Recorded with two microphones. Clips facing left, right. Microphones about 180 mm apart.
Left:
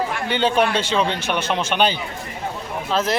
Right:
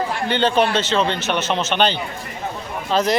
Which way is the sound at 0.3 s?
10° left (ahead or behind).